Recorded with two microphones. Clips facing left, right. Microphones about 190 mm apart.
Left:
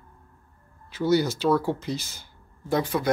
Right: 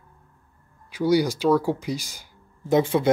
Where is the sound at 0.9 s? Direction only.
10° right (ahead or behind).